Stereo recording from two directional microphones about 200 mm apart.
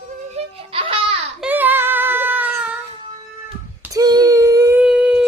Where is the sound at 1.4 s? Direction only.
10° right (ahead or behind).